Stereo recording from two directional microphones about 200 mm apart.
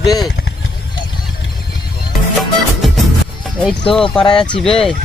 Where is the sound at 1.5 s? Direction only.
50° left (ahead or behind).